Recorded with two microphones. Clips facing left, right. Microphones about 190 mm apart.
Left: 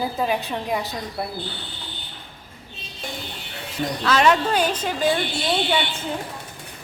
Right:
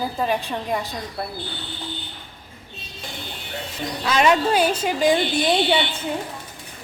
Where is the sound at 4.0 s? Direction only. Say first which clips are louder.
Right 1 dB; 10° right (ahead or behind).